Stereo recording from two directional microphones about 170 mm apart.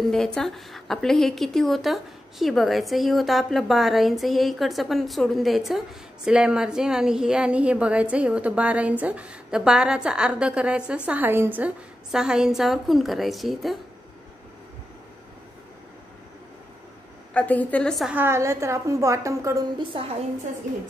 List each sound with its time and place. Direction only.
0.0 s a woman's voice: centre (ahead or behind)
17.3 s a woman's voice: 10° left (ahead or behind)
18.1 s a woman's voice: 15° right (ahead or behind)
19.8 s a woman's voice: 35° right (ahead or behind)